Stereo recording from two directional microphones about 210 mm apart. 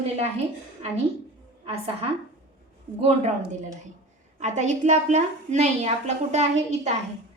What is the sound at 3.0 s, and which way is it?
Speech, 30° right (ahead or behind).